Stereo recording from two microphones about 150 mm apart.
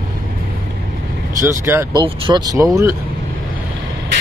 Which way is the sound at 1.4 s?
15° right (ahead or behind).